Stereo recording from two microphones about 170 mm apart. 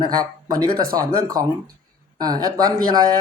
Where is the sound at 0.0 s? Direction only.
25° right (ahead or behind).